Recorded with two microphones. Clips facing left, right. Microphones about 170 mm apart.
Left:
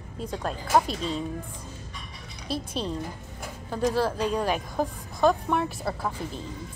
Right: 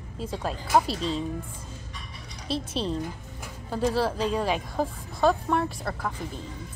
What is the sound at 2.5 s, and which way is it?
Speech, 30° right (ahead or behind).